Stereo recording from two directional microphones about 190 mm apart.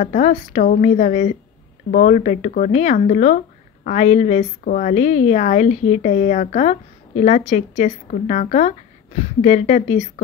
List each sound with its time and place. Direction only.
0.0 s a woman's voice: 40° left (ahead or behind)